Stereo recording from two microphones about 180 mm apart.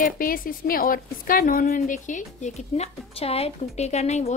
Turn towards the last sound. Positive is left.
turn(degrees=40)  # may be behind; listen again after turning